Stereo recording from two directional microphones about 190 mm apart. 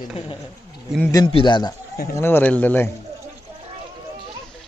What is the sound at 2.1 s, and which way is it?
Speech, 10° left (ahead or behind).